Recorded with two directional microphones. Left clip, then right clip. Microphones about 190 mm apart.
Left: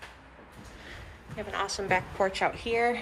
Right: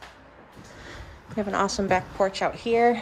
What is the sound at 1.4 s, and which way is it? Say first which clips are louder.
Speech: right 7 dB; 30° right (ahead or behind).